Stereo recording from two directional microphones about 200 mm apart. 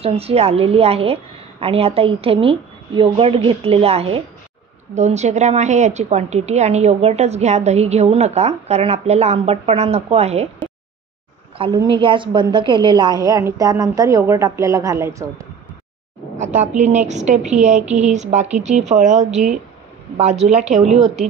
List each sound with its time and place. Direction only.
0.0 s a woman's voice: 30° right (ahead or behind)
11.5 s a woman's voice: 25° right (ahead or behind)
16.3 s a woman's voice: 35° right (ahead or behind)